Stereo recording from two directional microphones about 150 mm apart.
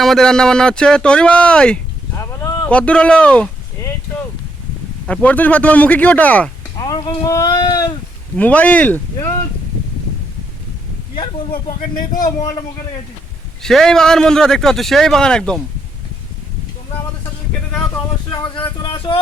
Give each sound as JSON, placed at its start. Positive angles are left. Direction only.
{"t": 0.0, "sound": "a man's voice", "side_deg": 5}
{"t": 2.1, "sound": "a sound", "side_deg": 20}
{"t": 2.6, "sound": "speech", "side_deg": 10}
{"t": 3.8, "sound": "a sound", "side_deg": 15}
{"t": 5.0, "sound": "speech", "side_deg": 10}
{"t": 6.7, "sound": "a sound", "side_deg": 25}
{"t": 7.3, "sound": "speech", "side_deg": 20}
{"t": 8.4, "sound": "speech", "side_deg": 10}
{"t": 12.2, "sound": "a man's voice", "side_deg": 25}
{"t": 13.6, "sound": "a man's voice", "side_deg": 5}
{"t": 18.3, "sound": "speech", "side_deg": 30}
{"t": 18.8, "sound": "a sound", "side_deg": 30}